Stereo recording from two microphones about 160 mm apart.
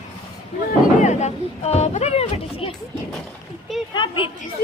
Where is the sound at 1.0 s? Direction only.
45° left (ahead or behind).